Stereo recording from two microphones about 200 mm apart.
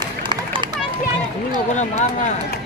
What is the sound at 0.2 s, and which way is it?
Run, 25° right (ahead or behind).